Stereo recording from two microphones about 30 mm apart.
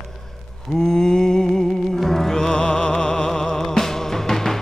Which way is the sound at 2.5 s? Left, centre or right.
Left.